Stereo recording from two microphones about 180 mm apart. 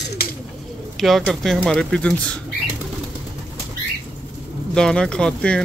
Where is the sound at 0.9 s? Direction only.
Centre (ahead or behind).